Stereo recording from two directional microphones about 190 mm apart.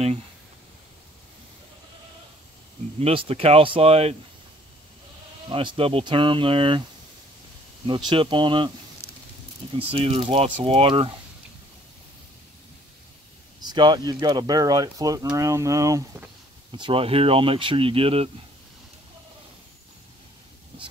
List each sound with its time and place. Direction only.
3.0 s speech: 30° right (ahead or behind)
5.5 s speech: 25° right (ahead or behind)
7.8 s speech: 25° right (ahead or behind)
9.8 s speech: 30° right (ahead or behind)
13.6 s speech: 20° right (ahead or behind)